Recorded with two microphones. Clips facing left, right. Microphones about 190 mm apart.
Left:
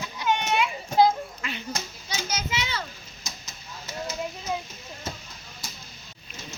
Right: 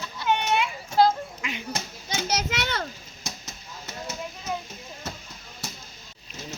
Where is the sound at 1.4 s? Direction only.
15° right (ahead or behind).